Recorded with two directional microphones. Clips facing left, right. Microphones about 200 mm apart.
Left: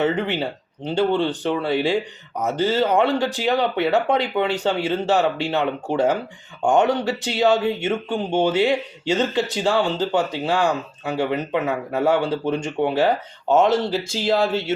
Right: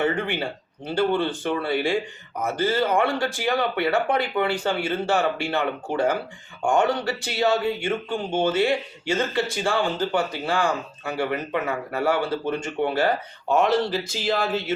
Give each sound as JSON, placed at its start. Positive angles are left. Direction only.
{"t": 0.0, "sound": "speech", "side_deg": 20}